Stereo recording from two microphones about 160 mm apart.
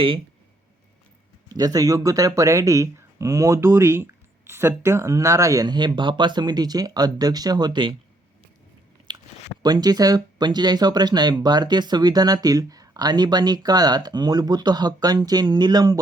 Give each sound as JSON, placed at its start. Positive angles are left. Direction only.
{"t": 1.5, "sound": "speech", "side_deg": -20}
{"t": 9.1, "sound": "chewing", "side_deg": -30}
{"t": 9.6, "sound": "speech", "side_deg": -25}